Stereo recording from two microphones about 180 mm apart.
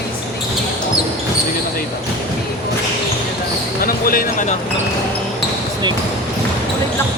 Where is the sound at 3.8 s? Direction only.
55° left (ahead or behind).